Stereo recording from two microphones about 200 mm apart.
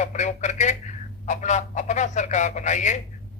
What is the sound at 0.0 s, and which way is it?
A man's voice, 35° left (ahead or behind).